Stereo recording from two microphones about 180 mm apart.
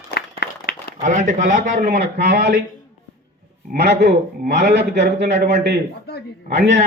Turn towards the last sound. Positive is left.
turn(degrees=-65)  # may be behind; listen again after turning